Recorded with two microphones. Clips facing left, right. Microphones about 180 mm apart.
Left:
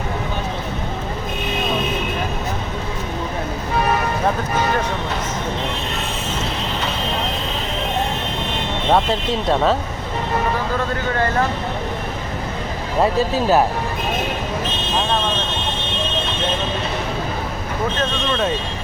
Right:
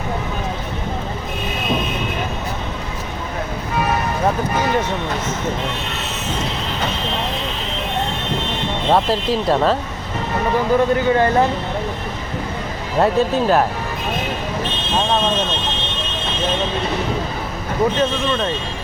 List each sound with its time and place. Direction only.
8.9 s speech: centre (ahead or behind)
10.9 s speech: 20° right (ahead or behind)
13.0 s speech: 5° left (ahead or behind)
17.9 s speech: 10° right (ahead or behind)